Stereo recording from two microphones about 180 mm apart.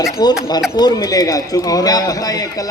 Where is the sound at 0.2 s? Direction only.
20° left (ahead or behind).